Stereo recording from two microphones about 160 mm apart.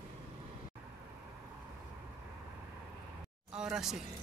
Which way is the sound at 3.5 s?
5° right (ahead or behind).